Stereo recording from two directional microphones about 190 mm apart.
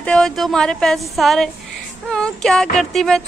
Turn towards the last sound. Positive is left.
turn(degrees=0)  # may be behind; listen again after turning